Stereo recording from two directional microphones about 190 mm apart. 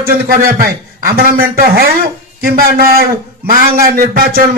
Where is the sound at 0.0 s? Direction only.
50° right (ahead or behind).